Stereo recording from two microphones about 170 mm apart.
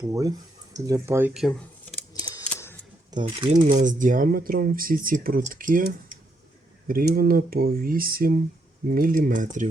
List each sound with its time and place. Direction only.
0.1 s speech: 20° right (ahead or behind)
1.3 s speech: centre (ahead or behind)
2.1 s a sound: 25° left (ahead or behind)
2.4 s camera: 10° left (ahead or behind)
3.1 s speech: 30° right (ahead or behind)
3.7 s speech: 50° right (ahead or behind)